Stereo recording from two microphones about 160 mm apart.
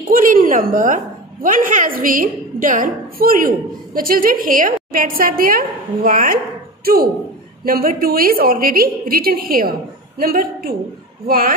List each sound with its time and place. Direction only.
0.1 s a woman's voice: 60° right (ahead or behind)